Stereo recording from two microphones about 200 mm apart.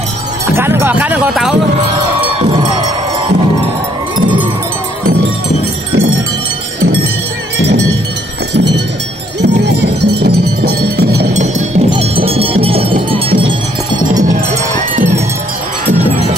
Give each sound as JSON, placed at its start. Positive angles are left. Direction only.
{"t": 0.5, "sound": "speech", "side_deg": -10}
{"t": 8.5, "sound": "a sound", "side_deg": -55}
{"t": 9.4, "sound": "music", "side_deg": -55}
{"t": 12.3, "sound": "music", "side_deg": -30}
{"t": 14.8, "sound": "music", "side_deg": -40}